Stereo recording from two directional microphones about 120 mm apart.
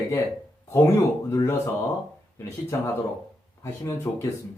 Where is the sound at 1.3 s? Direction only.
20° left (ahead or behind).